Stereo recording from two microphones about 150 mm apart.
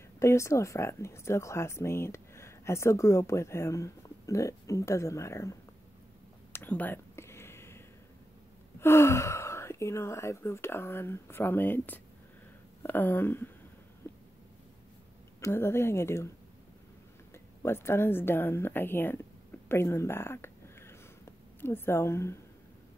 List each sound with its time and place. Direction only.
0.2 s speech: 20° left (ahead or behind)
6.5 s a sound: 10° left (ahead or behind)
8.7 s speech: 15° left (ahead or behind)
15.4 s speech: 15° left (ahead or behind)
17.3 s a woman's voice: 15° left (ahead or behind)
19.7 s a sound: 15° left (ahead or behind)